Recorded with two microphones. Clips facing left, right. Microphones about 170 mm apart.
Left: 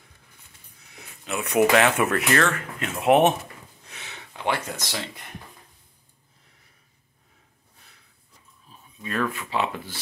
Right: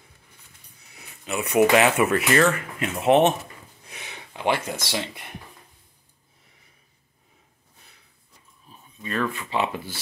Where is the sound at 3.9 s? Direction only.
15° right (ahead or behind).